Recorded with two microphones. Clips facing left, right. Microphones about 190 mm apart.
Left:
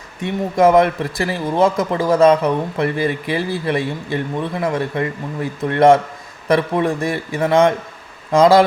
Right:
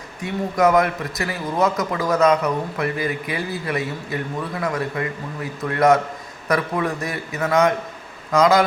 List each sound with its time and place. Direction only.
0.2 s speech: 25° left (ahead or behind)